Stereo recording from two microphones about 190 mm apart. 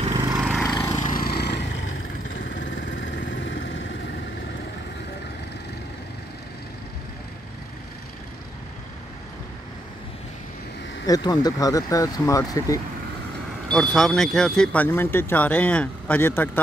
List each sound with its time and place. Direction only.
0.1 s vehicle: 20° right (ahead or behind)
0.7 s vehicle: 20° left (ahead or behind)
1.0 s vehicle: 50° left (ahead or behind)
3.0 s vehicle: 75° left (ahead or behind)
11.1 s speech: 20° left (ahead or behind)
13.7 s speech: 5° left (ahead or behind)